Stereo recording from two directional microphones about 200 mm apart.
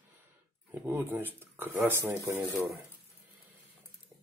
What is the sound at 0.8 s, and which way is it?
Speech, 10° right (ahead or behind).